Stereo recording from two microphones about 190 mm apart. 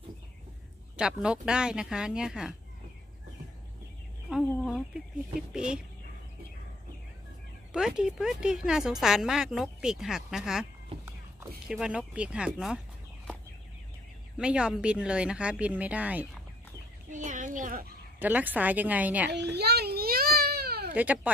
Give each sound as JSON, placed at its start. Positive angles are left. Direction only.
{"t": 0.9, "sound": "speech", "side_deg": -5}
{"t": 4.6, "sound": "a sound", "side_deg": 0}
{"t": 5.5, "sound": "speech", "side_deg": -5}
{"t": 7.7, "sound": "speech", "side_deg": -5}
{"t": 14.3, "sound": "speech", "side_deg": -5}
{"t": 17.1, "sound": "speech", "side_deg": -40}
{"t": 18.2, "sound": "a woman's voice", "side_deg": -10}
{"t": 19.3, "sound": "a sound", "side_deg": -60}
{"t": 20.9, "sound": "speech", "side_deg": -10}